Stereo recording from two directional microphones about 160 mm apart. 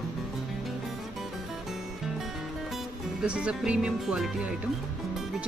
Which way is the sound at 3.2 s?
5° right (ahead or behind).